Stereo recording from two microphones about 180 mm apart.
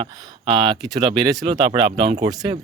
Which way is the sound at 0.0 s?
25° right (ahead or behind).